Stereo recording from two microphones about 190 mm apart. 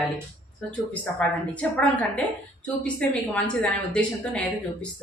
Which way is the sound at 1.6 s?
5° left (ahead or behind).